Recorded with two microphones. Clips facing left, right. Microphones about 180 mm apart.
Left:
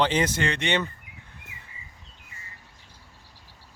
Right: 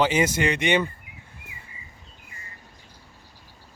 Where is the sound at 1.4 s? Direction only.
5° right (ahead or behind).